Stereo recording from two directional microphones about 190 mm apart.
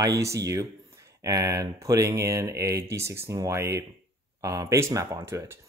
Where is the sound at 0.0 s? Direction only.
15° right (ahead or behind).